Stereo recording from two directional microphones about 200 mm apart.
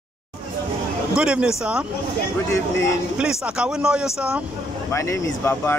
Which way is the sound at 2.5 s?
15° left (ahead or behind).